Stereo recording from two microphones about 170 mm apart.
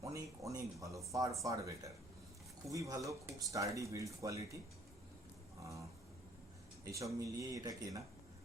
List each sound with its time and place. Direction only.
0.0 s speech: 20° right (ahead or behind)
6.8 s speech: 20° right (ahead or behind)